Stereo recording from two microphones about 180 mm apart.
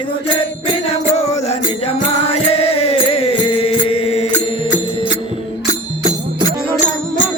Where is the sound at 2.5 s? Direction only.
35° left (ahead or behind).